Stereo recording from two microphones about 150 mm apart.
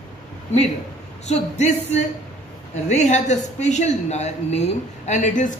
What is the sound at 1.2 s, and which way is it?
A man's voice, 50° left (ahead or behind).